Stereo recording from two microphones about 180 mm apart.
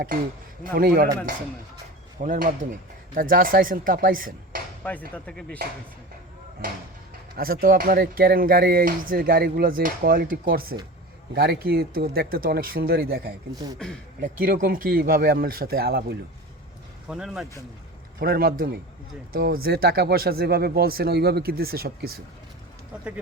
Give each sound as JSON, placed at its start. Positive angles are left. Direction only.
{"t": 0.6, "sound": "speech", "side_deg": -55}
{"t": 2.2, "sound": "speech", "side_deg": -50}
{"t": 4.8, "sound": "speech", "side_deg": 10}
{"t": 7.3, "sound": "speech", "side_deg": -55}
{"t": 13.7, "sound": "speech", "side_deg": 5}
{"t": 14.2, "sound": "speech", "side_deg": -50}
{"t": 17.1, "sound": "speech", "side_deg": -5}
{"t": 18.2, "sound": "speech", "side_deg": -55}